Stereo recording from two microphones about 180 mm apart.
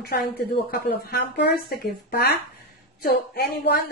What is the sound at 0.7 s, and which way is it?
A woman's voice, 60° left (ahead or behind).